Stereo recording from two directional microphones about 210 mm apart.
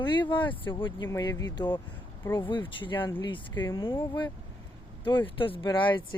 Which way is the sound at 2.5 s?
25° left (ahead or behind).